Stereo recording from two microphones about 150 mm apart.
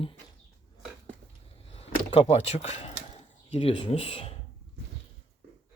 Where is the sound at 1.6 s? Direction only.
40° left (ahead or behind).